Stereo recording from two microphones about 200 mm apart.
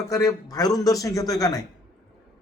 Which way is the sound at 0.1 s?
15° left (ahead or behind).